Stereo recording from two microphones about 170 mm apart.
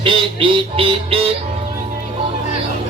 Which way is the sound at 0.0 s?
30° right (ahead or behind).